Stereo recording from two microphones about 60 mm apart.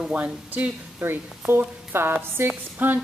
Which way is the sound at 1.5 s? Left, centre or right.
Right.